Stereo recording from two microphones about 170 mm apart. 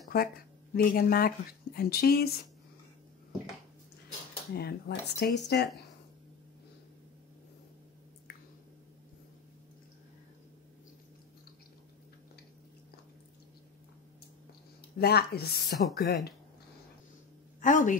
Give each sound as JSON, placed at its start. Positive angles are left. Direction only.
{"t": 0.1, "sound": "speech", "side_deg": 70}
{"t": 4.6, "sound": "speech", "side_deg": 70}
{"t": 15.0, "sound": "speech", "side_deg": 70}
{"t": 17.6, "sound": "speech", "side_deg": 50}